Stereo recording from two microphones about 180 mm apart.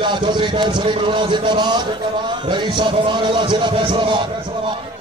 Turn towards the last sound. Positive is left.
turn(degrees=-25)  # may be behind; listen again after turning